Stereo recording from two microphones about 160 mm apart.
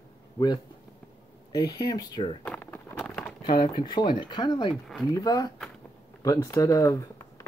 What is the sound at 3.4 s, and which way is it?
Speech, 25° left (ahead or behind).